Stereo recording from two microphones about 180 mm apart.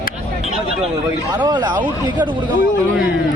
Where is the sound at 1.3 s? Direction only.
20° right (ahead or behind).